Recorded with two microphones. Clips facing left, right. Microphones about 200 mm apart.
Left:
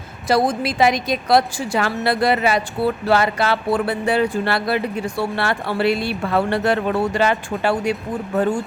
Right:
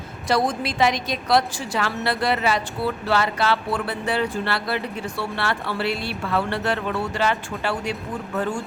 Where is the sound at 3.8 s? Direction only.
10° left (ahead or behind).